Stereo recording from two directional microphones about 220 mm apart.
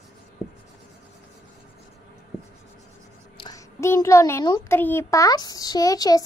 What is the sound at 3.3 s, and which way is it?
A child's voice, 15° left (ahead or behind).